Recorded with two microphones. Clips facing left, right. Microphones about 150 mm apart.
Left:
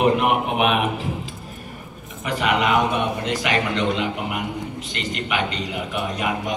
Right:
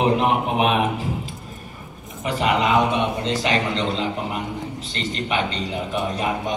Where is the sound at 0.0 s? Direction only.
30° right (ahead or behind).